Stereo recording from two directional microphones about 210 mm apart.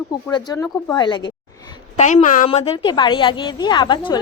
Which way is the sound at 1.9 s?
35° left (ahead or behind).